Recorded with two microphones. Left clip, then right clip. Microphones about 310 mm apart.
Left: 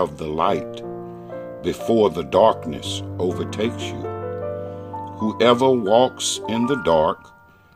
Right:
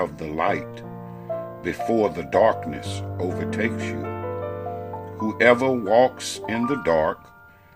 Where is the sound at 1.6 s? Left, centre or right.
Centre.